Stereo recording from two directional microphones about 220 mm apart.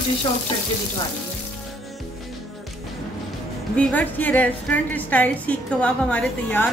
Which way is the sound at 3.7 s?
5° left (ahead or behind).